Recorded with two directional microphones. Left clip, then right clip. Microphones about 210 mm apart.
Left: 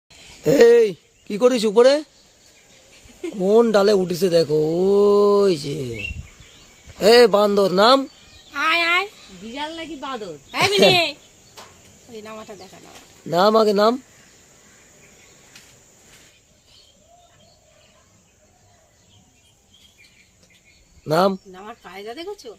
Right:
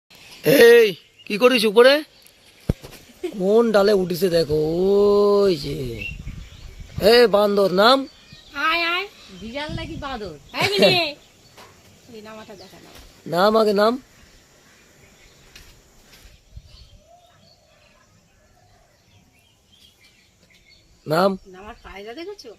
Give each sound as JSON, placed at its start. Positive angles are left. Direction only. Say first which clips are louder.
{"t": 0.4, "sound": "speech", "louder": "right 1 dB", "side_deg": 5}
{"t": 3.3, "sound": "speech", "louder": "left 1 dB", "side_deg": 10}
{"t": 7.0, "sound": "speech", "louder": "left 1 dB", "side_deg": 10}
{"t": 8.5, "sound": "a sound", "louder": "left 3 dB", "side_deg": 20}
{"t": 9.5, "sound": "a woman's voice", "louder": "left 1 dB", "side_deg": -25}
{"t": 10.7, "sound": "speech", "louder": "left 1 dB", "side_deg": 15}
{"t": 12.1, "sound": "speech", "louder": "left 3 dB", "side_deg": 20}
{"t": 13.3, "sound": "speech", "louder": "left 1 dB", "side_deg": 5}
{"t": 21.1, "sound": "speech", "louder": "left 1 dB", "side_deg": 5}
{"t": 21.5, "sound": "speech", "louder": "left 2 dB", "side_deg": 20}